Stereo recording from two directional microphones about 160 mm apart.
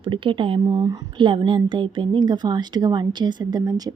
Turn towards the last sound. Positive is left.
turn(degrees=-25)  # may be behind; listen again after turning